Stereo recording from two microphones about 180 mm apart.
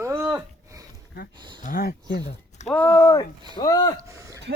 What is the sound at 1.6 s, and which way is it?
Speech, 55° left (ahead or behind).